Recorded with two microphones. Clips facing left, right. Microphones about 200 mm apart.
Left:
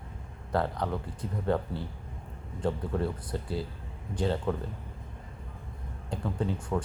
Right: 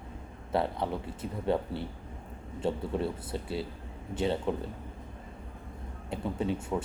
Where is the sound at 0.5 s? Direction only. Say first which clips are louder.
Even; 25° right (ahead or behind).